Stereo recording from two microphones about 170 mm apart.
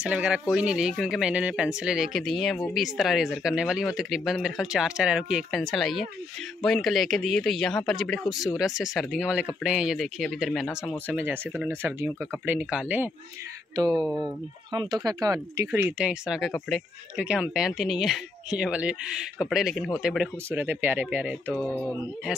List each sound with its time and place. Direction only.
0.0 s speech: 5° right (ahead or behind)
11.1 s speech: 10° right (ahead or behind)
14.2 s speech: 25° right (ahead or behind); by 21.5 s 10° right (ahead or behind)
21.5 s a sound: 5° left (ahead or behind)